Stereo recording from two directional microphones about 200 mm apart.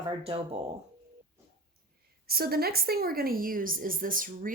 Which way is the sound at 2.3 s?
50° right (ahead or behind).